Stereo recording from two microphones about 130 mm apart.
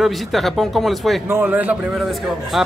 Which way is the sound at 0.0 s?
Centre (ahead or behind).